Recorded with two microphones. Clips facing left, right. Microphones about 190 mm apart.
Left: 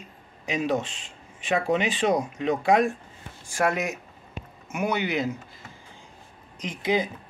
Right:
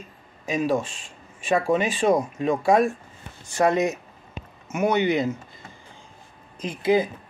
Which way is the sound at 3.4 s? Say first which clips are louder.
Right 5 dB; 10° left (ahead or behind).